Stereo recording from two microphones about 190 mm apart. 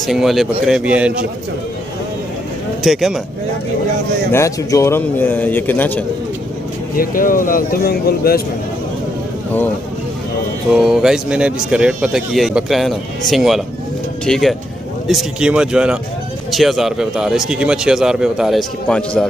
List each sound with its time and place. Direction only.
0.0 s speech: centre (ahead or behind)
2.8 s speech: centre (ahead or behind)
4.3 s a man's voice: 15° left (ahead or behind)
7.0 s speech: 45° left (ahead or behind)
10.7 s speech: centre (ahead or behind)